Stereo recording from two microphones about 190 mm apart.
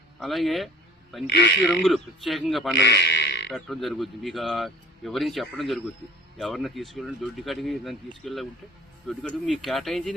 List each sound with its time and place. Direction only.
0.2 s speech: centre (ahead or behind)
1.3 s speech: 65° left (ahead or behind)
1.6 s speech: centre (ahead or behind)
2.7 s speech: 60° left (ahead or behind)
3.5 s speech: centre (ahead or behind)